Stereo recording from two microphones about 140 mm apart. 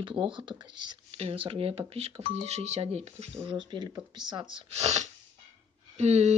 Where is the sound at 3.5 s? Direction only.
35° right (ahead or behind).